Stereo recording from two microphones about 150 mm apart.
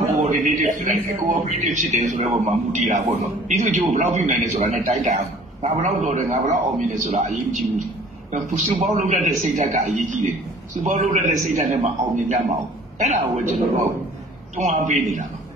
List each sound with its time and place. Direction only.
0.2 s a sound: 55° right (ahead or behind)
1.6 s a man's voice: 50° right (ahead or behind)
14.6 s a man's voice: 50° right (ahead or behind)